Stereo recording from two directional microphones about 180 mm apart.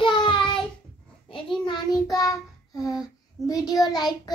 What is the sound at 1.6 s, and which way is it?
Child singing, 25° left (ahead or behind).